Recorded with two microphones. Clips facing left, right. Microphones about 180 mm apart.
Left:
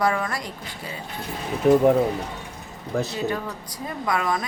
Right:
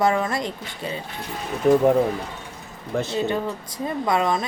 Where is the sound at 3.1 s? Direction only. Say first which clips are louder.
Right 3 dB; 25° right (ahead or behind).